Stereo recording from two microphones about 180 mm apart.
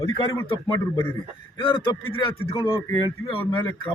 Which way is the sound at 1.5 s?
25° left (ahead or behind).